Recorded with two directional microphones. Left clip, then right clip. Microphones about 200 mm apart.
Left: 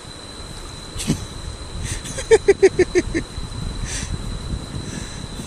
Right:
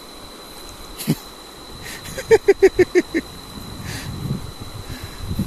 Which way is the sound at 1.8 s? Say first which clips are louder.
Even; 15° right (ahead or behind).